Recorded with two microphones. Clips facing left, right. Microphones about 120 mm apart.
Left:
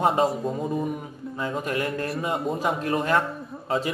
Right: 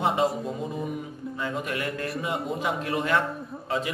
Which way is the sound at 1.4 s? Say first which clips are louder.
Left 3 dB; 35° left (ahead or behind).